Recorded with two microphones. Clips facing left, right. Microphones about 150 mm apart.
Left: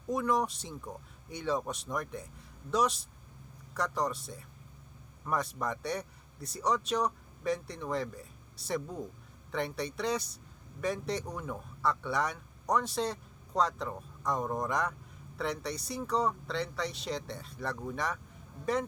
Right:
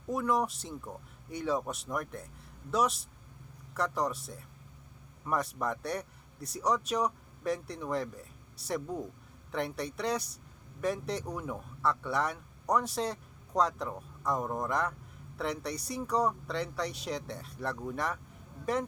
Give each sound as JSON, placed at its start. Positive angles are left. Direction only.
{"t": 0.1, "sound": "speech", "side_deg": -5}